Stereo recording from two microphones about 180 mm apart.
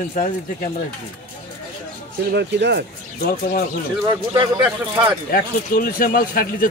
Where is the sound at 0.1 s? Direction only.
45° left (ahead or behind).